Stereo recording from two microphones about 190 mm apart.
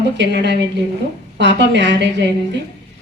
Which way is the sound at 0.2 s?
65° right (ahead or behind).